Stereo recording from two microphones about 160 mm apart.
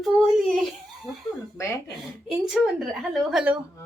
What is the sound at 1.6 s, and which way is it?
Speech, 20° left (ahead or behind).